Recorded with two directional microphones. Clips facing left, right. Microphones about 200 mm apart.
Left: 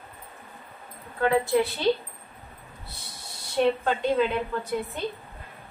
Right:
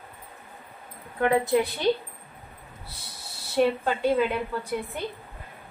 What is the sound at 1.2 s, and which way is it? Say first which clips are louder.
Speech: even; 20° right (ahead or behind).